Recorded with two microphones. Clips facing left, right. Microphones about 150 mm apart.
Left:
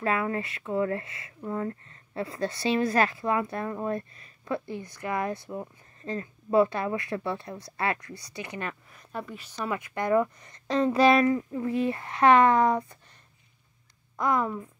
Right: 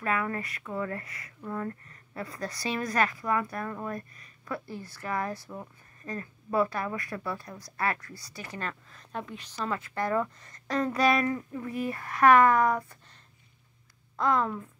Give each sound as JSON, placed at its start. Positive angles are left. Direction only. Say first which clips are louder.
{"t": 0.0, "sound": "a woman's voice", "louder": "left 3 dB", "side_deg": 25}
{"t": 14.1, "sound": "a woman's voice", "louder": "even", "side_deg": 15}